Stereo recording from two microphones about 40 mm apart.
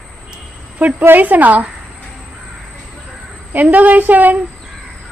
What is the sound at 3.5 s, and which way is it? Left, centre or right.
Speech, right.